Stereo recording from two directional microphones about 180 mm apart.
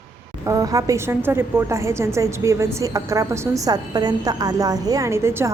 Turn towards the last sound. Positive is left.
turn(degrees=-15)  # may be behind; listen again after turning